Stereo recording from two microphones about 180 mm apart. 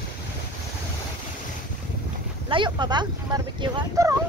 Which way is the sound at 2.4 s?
25° right (ahead or behind).